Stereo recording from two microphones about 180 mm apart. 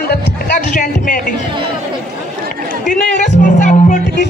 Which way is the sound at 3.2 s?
45° left (ahead or behind).